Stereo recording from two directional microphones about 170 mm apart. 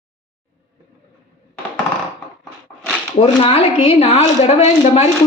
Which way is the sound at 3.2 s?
35° left (ahead or behind).